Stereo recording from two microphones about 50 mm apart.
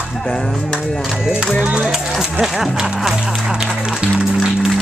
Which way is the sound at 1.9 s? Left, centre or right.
Centre.